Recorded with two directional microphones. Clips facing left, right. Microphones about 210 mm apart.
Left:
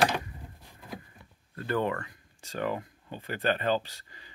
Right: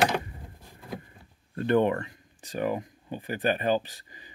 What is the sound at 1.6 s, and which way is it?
Speech, 20° right (ahead or behind).